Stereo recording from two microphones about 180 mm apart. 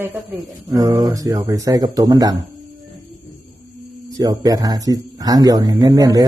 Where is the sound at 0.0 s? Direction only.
15° right (ahead or behind).